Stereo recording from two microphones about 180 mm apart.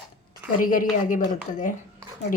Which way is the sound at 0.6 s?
50° left (ahead or behind).